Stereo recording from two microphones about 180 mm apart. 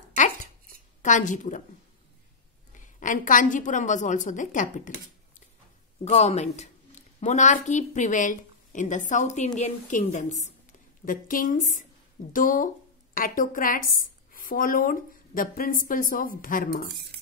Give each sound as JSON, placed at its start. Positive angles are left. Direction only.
{"t": 0.1, "sound": "a sound", "side_deg": 45}
{"t": 1.0, "sound": "a woman's voice", "side_deg": 45}
{"t": 2.7, "sound": "a woman's voice", "side_deg": 45}
{"t": 6.0, "sound": "a woman's voice", "side_deg": 35}